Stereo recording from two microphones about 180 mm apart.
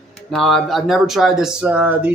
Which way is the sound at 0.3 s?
Centre (ahead or behind).